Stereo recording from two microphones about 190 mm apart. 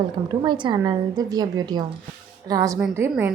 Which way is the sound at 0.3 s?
25° right (ahead or behind).